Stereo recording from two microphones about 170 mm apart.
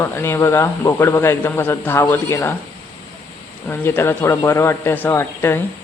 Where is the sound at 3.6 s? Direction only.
10° left (ahead or behind).